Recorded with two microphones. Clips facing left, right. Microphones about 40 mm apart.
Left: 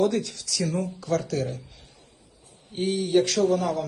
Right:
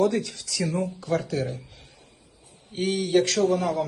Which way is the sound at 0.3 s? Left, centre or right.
Right.